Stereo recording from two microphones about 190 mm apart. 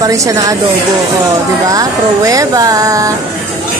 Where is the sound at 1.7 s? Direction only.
20° right (ahead or behind).